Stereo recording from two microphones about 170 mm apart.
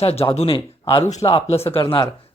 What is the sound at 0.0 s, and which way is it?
Speech, 35° left (ahead or behind).